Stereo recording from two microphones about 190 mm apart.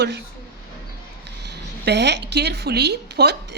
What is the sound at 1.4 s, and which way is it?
A woman's voice, 60° right (ahead or behind).